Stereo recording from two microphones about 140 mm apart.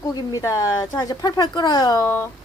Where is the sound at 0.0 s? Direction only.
25° left (ahead or behind).